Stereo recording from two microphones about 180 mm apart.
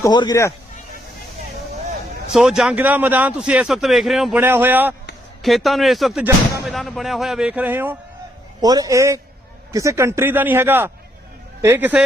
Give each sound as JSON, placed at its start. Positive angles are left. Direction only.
{"t": 0.0, "sound": "speech", "side_deg": 20}
{"t": 2.3, "sound": "a man's voice", "side_deg": -5}
{"t": 5.4, "sound": "speech", "side_deg": 0}
{"t": 8.6, "sound": "a man's voice", "side_deg": -20}